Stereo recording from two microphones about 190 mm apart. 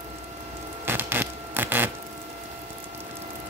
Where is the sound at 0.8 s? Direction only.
10° right (ahead or behind).